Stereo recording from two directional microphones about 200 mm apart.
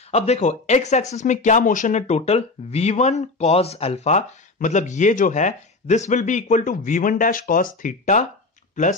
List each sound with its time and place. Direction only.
0.1 s speech: 35° left (ahead or behind)